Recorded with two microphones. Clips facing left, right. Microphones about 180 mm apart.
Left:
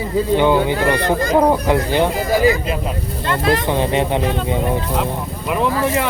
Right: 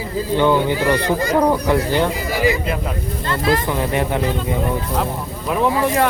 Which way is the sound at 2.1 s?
50° left (ahead or behind).